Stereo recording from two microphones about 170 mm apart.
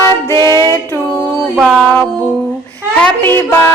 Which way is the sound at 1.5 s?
5° right (ahead or behind).